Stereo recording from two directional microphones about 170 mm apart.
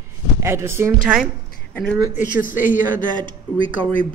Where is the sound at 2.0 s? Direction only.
10° right (ahead or behind).